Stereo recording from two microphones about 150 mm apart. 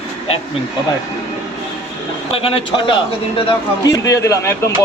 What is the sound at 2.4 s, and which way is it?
Speech, 35° left (ahead or behind).